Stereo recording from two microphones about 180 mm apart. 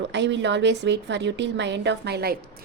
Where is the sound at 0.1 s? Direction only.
75° right (ahead or behind).